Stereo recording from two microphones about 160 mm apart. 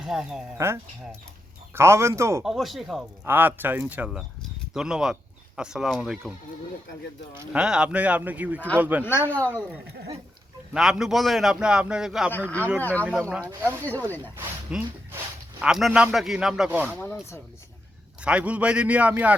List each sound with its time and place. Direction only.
0.0 s a man's voice: 5° right (ahead or behind)
0.5 s speech: 15° right (ahead or behind)
2.4 s a man's voice: centre (ahead or behind)
3.2 s a man's voice: 10° right (ahead or behind)
7.5 s speech: 5° right (ahead or behind)
9.3 s speech: 10° left (ahead or behind)
10.8 s a man's voice: 5° right (ahead or behind)
12.5 s speech: 10° left (ahead or behind)
13.4 s speech: 15° right (ahead or behind)
13.7 s speech: 10° left (ahead or behind)
14.7 s a man's voice: 5° right (ahead or behind)
17.0 s speech: 15° left (ahead or behind)
18.2 s speech: 10° right (ahead or behind)